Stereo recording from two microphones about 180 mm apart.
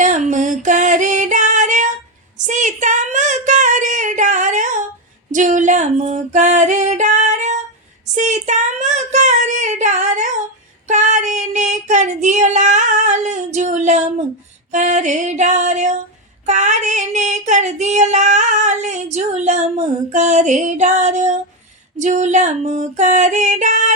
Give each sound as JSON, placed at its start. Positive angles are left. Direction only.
{"t": 0.0, "sound": "music", "side_deg": -45}
{"t": 2.5, "sound": "a sound", "side_deg": -45}
{"t": 5.3, "sound": "female singing", "side_deg": -45}
{"t": 8.1, "sound": "child singing", "side_deg": -40}
{"t": 14.7, "sound": "female singing", "side_deg": -40}